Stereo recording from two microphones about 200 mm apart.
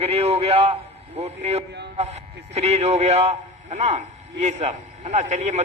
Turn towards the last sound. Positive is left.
turn(degrees=-35)  # may be behind; listen again after turning